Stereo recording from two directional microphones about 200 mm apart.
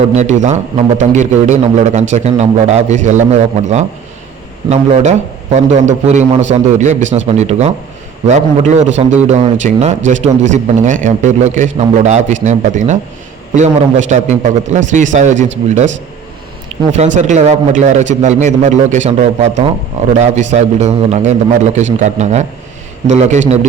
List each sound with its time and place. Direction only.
0.2 s a man's voice: 35° right (ahead or behind)
5.5 s a man's voice: 35° right (ahead or behind)
16.6 s a man's voice: 35° right (ahead or behind)